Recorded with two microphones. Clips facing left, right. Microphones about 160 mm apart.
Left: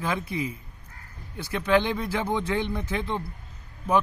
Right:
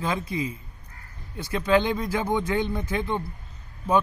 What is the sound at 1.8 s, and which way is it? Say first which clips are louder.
Speech: right 2 dB; 20° right (ahead or behind).